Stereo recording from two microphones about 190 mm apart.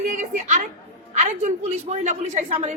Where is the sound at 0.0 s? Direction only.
40° right (ahead or behind).